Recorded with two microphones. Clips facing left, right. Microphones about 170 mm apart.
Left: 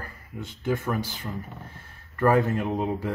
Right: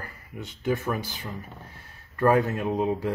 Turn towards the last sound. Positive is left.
turn(degrees=-15)  # may be behind; listen again after turning